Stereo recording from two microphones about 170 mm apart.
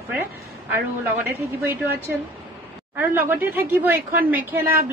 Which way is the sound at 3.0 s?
10° right (ahead or behind).